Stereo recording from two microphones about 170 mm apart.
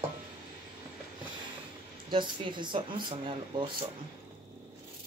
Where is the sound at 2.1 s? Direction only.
30° right (ahead or behind).